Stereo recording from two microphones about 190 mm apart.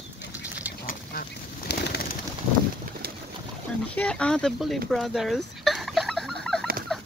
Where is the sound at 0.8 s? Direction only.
50° left (ahead or behind).